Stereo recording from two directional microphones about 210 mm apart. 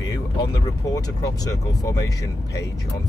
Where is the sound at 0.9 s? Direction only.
15° left (ahead or behind).